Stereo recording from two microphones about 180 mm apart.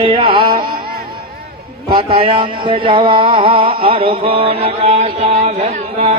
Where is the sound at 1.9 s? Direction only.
30° right (ahead or behind).